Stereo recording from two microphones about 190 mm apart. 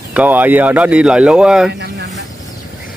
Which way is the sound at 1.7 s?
65° right (ahead or behind).